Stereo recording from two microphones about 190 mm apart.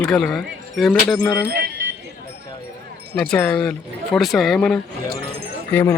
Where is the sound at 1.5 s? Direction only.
50° right (ahead or behind).